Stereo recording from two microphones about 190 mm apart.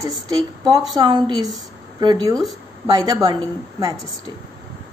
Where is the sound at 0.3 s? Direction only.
25° right (ahead or behind).